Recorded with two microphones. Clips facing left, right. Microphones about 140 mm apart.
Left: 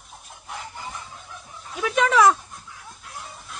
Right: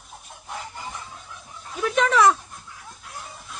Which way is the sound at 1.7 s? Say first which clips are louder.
Even; centre (ahead or behind).